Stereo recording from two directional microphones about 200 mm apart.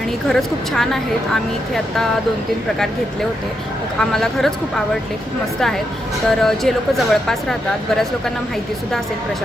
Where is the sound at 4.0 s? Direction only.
Centre (ahead or behind).